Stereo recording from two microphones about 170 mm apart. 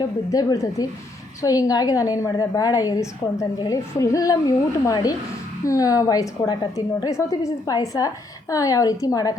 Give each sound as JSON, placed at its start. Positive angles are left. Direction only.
{"t": 0.0, "sound": "a woman's voice", "side_deg": 20}